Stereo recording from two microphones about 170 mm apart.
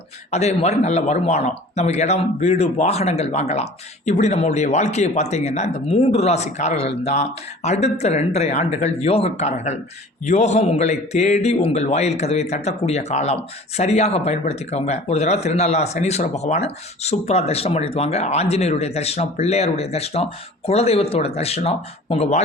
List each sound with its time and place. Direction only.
0.3 s a man's voice: 40° left (ahead or behind)